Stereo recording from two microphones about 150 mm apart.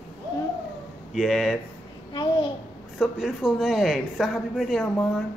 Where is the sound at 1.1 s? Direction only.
Centre (ahead or behind).